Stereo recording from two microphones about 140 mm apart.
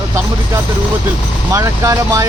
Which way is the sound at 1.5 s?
20° right (ahead or behind).